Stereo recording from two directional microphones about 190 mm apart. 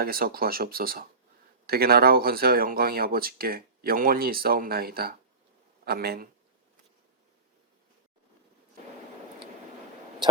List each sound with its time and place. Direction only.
0.0 s a man's voice: 50° right (ahead or behind)